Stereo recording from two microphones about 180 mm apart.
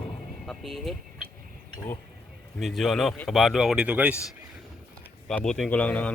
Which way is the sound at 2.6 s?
Centre (ahead or behind).